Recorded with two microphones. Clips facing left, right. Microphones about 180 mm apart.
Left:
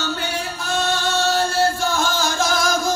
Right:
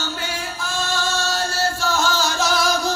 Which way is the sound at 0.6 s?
60° left (ahead or behind).